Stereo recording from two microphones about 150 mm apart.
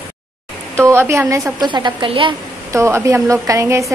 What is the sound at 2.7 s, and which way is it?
A woman's voice, 20° right (ahead or behind).